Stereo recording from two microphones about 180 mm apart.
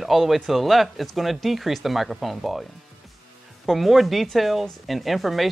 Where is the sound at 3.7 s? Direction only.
Centre (ahead or behind).